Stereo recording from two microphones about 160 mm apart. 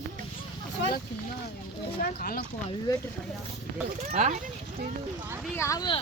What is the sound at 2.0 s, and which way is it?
Speech, 65° left (ahead or behind).